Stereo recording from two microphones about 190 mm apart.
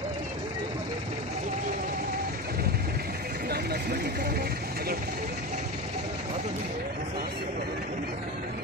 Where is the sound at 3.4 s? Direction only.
60° right (ahead or behind).